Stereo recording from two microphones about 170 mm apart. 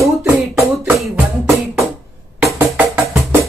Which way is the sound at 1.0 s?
Centre (ahead or behind).